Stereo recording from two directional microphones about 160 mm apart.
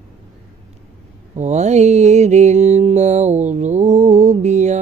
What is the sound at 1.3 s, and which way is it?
Mantra, 45° right (ahead or behind).